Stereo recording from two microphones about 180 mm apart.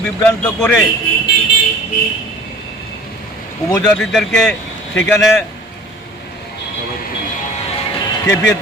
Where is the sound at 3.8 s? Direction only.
5° left (ahead or behind).